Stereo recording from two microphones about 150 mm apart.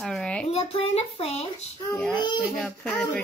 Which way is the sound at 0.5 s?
45° left (ahead or behind).